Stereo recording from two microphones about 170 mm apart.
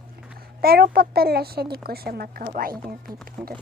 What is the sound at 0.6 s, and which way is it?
A child's voice, 65° right (ahead or behind).